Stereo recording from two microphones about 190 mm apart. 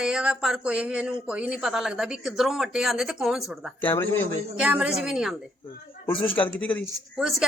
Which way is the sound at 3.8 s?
10° left (ahead or behind).